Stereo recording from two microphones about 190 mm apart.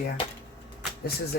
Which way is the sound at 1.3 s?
55° left (ahead or behind).